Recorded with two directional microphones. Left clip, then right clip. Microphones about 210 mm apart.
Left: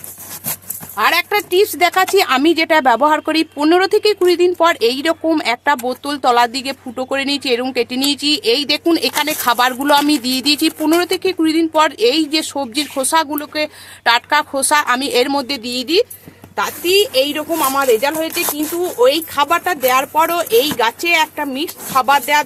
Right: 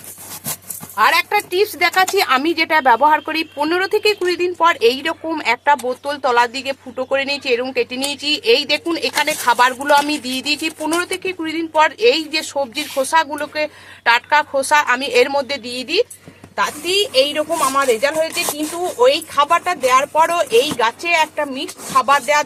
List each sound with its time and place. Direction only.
0.9 s speech: 55° left (ahead or behind)